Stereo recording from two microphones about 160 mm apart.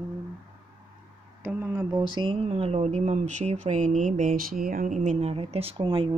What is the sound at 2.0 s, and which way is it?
Speech, 30° right (ahead or behind).